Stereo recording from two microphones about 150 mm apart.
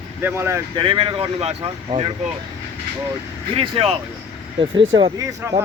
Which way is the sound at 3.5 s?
40° right (ahead or behind).